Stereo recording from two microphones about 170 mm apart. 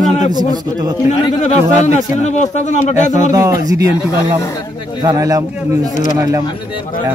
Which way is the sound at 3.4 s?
20° right (ahead or behind).